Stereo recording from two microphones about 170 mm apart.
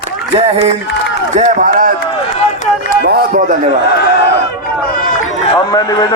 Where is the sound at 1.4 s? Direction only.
50° right (ahead or behind).